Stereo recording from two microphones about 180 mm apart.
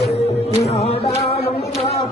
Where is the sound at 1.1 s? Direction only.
35° left (ahead or behind).